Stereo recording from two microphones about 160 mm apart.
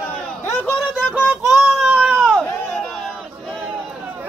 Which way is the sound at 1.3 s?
5° right (ahead or behind).